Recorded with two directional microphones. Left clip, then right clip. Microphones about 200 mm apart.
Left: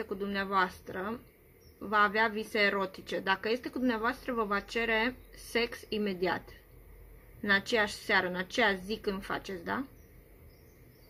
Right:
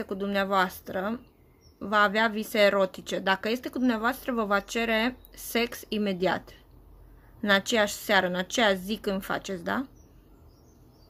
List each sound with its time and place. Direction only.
0.0 s speech: 55° right (ahead or behind)
7.4 s a woman's voice: 55° right (ahead or behind)